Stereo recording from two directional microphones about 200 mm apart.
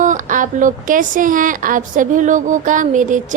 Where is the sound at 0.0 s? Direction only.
40° right (ahead or behind).